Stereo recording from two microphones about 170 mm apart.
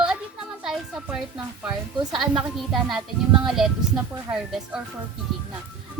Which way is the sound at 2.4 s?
5° right (ahead or behind).